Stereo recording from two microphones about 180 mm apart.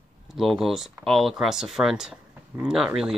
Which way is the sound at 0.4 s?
Centre (ahead or behind).